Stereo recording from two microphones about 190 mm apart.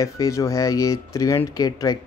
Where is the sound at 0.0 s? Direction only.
15° left (ahead or behind).